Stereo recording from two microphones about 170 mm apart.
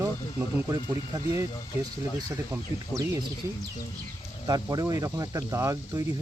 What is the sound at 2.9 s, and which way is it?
Speech, 15° right (ahead or behind).